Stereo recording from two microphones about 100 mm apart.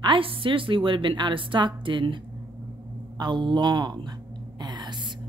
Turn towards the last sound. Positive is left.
turn(degrees=-50)  # may be behind; listen again after turning